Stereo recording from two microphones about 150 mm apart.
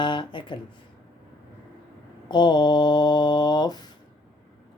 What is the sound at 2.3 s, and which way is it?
Mantra, 30° left (ahead or behind).